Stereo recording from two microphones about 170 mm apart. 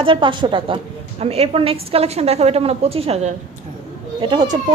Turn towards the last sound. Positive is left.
turn(degrees=-25)  # may be behind; listen again after turning